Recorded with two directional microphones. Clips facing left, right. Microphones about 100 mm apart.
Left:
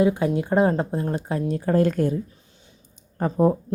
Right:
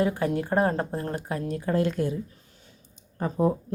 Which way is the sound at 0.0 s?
20° left (ahead or behind).